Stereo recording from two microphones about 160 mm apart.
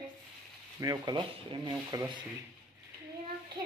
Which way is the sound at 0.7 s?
25° right (ahead or behind).